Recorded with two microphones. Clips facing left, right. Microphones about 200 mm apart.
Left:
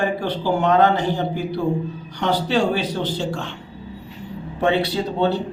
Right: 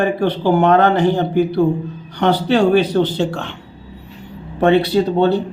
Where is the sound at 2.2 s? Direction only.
60° right (ahead or behind).